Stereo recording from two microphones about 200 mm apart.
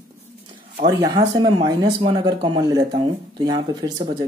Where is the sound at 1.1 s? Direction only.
20° right (ahead or behind).